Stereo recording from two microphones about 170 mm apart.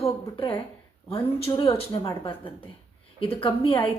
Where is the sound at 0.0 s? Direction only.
30° left (ahead or behind).